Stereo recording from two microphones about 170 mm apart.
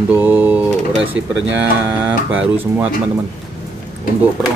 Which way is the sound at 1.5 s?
10° right (ahead or behind).